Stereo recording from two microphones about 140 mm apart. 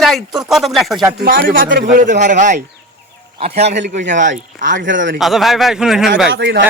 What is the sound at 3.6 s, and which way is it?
A man's voice, 55° right (ahead or behind).